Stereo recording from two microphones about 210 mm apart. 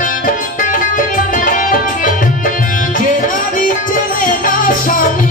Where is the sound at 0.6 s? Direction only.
40° left (ahead or behind).